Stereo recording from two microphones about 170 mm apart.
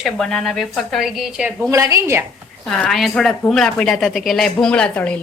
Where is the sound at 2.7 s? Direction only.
5° left (ahead or behind).